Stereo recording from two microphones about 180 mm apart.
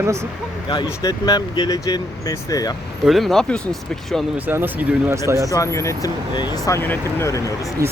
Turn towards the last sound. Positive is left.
turn(degrees=-15)  # may be behind; listen again after turning